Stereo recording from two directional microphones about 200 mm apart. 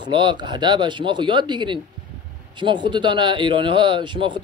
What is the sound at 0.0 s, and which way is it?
A man's voice, 25° right (ahead or behind).